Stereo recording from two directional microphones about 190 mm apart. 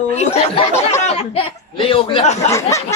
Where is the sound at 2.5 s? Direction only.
15° left (ahead or behind).